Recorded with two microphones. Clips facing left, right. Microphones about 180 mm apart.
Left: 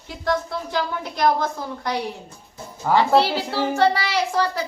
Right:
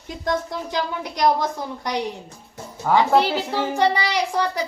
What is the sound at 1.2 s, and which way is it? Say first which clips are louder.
Speech: right 1 dB; 15° right (ahead or behind).